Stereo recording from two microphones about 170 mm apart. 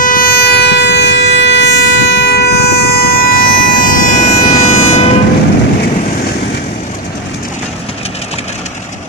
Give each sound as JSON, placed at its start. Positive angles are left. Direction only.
{"t": 0.0, "sound": "vehicle", "side_deg": 55}